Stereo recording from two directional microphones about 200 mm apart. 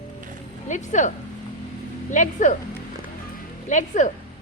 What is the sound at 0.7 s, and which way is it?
Speech, 35° left (ahead or behind).